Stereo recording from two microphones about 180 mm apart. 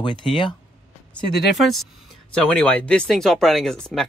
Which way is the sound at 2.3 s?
5° left (ahead or behind).